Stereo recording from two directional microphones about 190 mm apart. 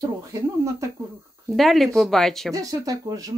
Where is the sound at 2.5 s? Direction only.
20° right (ahead or behind).